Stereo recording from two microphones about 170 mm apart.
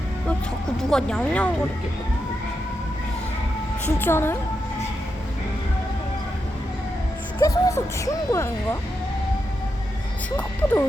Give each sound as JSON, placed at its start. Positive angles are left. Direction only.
{"t": 0.9, "sound": "speech", "side_deg": 5}
{"t": 3.8, "sound": "speech", "side_deg": 15}
{"t": 7.3, "sound": "speech", "side_deg": 20}
{"t": 10.3, "sound": "speech", "side_deg": 10}